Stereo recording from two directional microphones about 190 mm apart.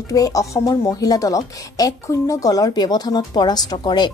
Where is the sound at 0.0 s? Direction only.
20° left (ahead or behind).